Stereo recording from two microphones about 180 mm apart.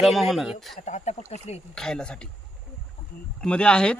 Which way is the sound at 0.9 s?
40° left (ahead or behind).